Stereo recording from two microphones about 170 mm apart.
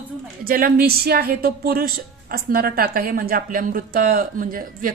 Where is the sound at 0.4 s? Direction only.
60° right (ahead or behind).